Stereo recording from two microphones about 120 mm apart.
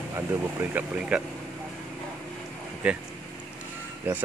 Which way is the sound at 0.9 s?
10° right (ahead or behind).